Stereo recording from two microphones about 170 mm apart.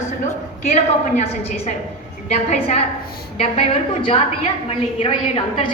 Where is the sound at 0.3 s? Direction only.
40° left (ahead or behind).